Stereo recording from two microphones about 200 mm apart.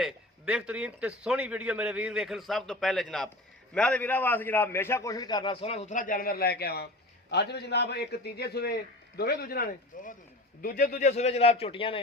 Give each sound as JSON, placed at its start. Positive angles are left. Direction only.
{"t": 0.0, "sound": "a man's voice", "side_deg": -5}